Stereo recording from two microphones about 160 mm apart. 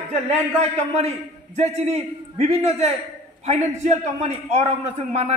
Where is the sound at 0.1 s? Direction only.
40° right (ahead or behind).